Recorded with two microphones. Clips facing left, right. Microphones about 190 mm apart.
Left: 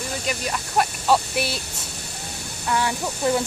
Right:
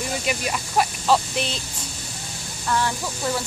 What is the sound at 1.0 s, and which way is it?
Speech, 5° left (ahead or behind).